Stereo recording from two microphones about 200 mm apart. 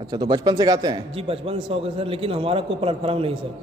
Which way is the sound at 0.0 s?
20° right (ahead or behind).